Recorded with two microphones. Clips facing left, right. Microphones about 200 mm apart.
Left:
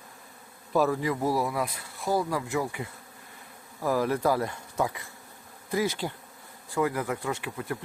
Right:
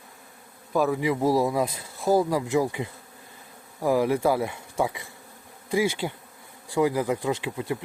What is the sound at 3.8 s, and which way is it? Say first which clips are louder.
Speech: right 3 dB; 15° right (ahead or behind).